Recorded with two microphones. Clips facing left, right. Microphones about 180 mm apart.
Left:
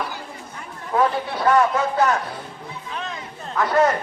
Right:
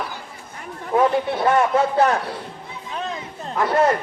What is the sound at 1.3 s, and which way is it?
Speech, 25° right (ahead or behind).